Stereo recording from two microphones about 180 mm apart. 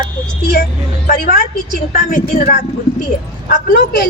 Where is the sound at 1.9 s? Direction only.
45° left (ahead or behind).